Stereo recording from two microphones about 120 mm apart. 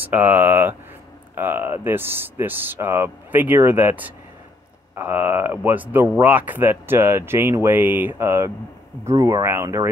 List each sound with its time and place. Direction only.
0.0 s speech: 15° right (ahead or behind)